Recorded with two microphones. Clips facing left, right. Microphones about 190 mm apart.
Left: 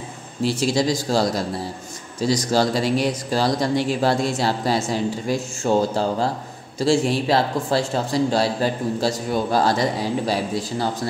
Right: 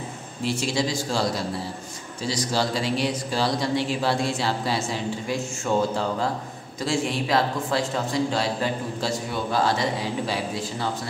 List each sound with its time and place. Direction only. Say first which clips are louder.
0.4 s a man's voice: left 5 dB; 35° left (ahead or behind)
2.2 s a man's voice: left 6 dB; 45° left (ahead or behind)